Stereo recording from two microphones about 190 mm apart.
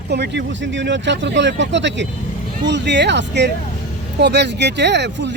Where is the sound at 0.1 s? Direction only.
65° right (ahead or behind).